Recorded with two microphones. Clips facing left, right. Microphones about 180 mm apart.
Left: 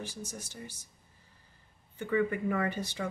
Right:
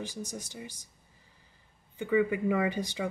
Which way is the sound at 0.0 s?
15° right (ahead or behind).